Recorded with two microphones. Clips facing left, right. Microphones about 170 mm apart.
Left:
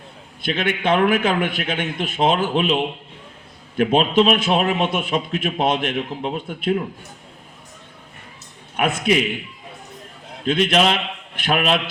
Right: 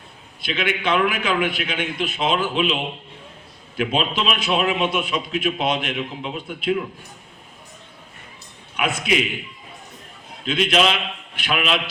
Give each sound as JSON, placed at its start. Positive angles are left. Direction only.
{"t": 0.4, "sound": "a man's voice", "side_deg": 50}
{"t": 8.7, "sound": "a man's voice", "side_deg": 50}
{"t": 10.4, "sound": "a man's voice", "side_deg": 55}